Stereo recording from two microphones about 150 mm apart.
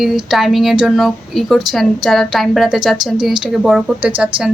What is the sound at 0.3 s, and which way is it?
A woman's voice, centre (ahead or behind).